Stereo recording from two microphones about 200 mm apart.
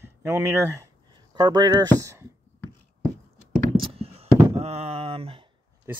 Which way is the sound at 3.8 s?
30° right (ahead or behind).